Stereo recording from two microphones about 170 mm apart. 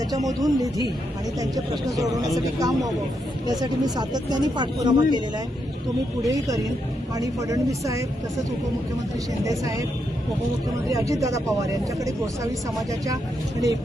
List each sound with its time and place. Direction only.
0.3 s speech: 20° right (ahead or behind)
6.2 s speech: 20° right (ahead or behind)
10.8 s speech: 20° right (ahead or behind)